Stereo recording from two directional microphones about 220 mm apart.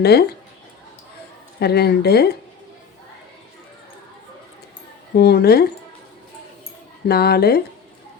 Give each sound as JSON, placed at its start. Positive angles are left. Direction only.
{"t": 0.0, "sound": "speech", "side_deg": 45}
{"t": 1.5, "sound": "speech", "side_deg": 45}
{"t": 5.1, "sound": "speech", "side_deg": 45}
{"t": 7.1, "sound": "speech", "side_deg": 45}